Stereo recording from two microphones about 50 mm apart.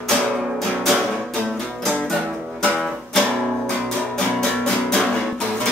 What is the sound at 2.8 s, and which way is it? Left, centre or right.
Music, centre.